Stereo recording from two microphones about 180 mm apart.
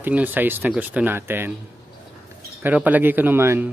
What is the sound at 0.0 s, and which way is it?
Speech, 10° right (ahead or behind).